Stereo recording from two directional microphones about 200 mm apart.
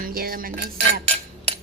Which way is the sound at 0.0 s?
45° right (ahead or behind).